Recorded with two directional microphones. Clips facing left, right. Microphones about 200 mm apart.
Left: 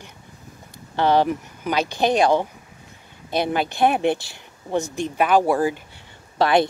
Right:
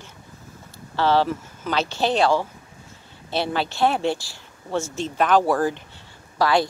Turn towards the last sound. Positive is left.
turn(degrees=25)  # may be behind; listen again after turning